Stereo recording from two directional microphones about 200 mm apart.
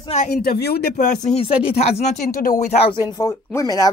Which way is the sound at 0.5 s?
50° left (ahead or behind).